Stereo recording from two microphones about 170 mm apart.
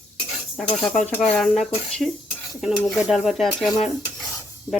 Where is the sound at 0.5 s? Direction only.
5° left (ahead or behind).